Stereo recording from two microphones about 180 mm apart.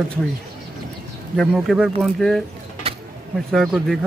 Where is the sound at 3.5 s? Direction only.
Centre (ahead or behind).